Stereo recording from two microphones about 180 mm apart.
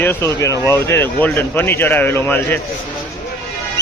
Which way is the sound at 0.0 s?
15° left (ahead or behind).